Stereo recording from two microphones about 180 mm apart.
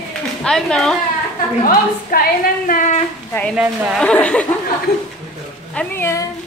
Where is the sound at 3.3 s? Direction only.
5° left (ahead or behind).